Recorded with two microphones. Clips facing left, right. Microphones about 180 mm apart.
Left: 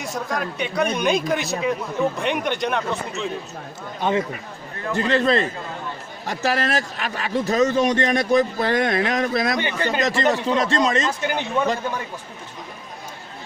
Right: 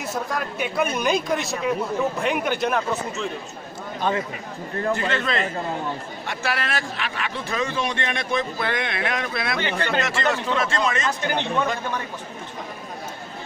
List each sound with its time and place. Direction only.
0.0 s a man's voice: 5° right (ahead or behind)
4.0 s speech: 20° left (ahead or behind)
4.9 s a man's voice: 35° left (ahead or behind)
11.1 s speech: 10° left (ahead or behind)